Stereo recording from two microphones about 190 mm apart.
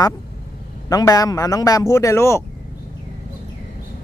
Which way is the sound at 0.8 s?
20° left (ahead or behind).